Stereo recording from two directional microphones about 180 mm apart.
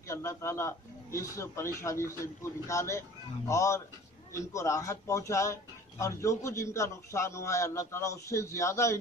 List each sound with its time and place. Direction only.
0.1 s speech: 15° left (ahead or behind)